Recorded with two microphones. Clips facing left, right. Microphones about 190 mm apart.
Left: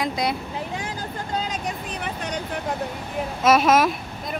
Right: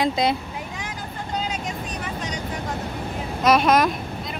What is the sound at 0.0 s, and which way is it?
Speech, 25° right (ahead or behind).